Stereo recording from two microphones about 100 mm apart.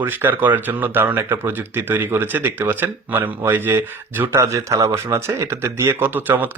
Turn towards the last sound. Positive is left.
turn(degrees=-20)  # may be behind; listen again after turning